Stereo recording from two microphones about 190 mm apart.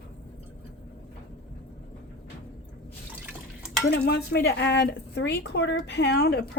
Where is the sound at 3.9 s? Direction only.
55° left (ahead or behind).